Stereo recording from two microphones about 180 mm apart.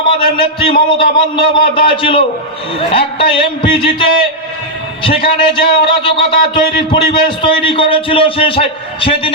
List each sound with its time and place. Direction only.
0.1 s a man's voice: 30° left (ahead or behind)